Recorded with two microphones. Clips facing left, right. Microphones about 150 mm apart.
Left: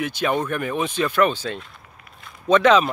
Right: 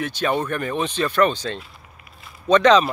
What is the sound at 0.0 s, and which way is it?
Speech, 10° left (ahead or behind).